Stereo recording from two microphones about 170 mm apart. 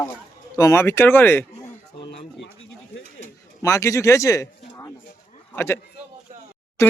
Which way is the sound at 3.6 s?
20° left (ahead or behind).